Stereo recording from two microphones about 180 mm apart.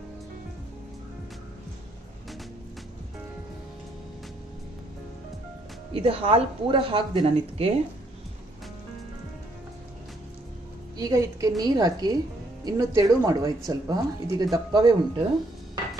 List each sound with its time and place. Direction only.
5.9 s speech: 30° right (ahead or behind)
11.0 s speech: 20° right (ahead or behind)